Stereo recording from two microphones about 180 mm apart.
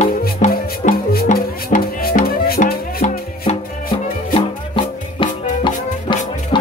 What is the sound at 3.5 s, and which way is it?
Music, 35° left (ahead or behind).